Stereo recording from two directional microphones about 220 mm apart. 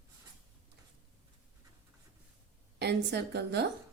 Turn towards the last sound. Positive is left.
turn(degrees=-50)  # may be behind; listen again after turning